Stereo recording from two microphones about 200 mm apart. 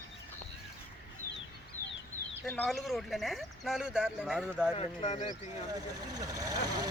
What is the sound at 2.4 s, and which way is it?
Speech, 5° left (ahead or behind).